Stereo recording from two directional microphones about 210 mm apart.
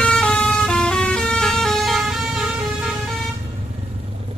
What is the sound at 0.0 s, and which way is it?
Vehicle, 5° left (ahead or behind).